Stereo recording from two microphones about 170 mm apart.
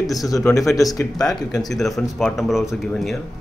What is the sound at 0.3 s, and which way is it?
Speech, 15° left (ahead or behind).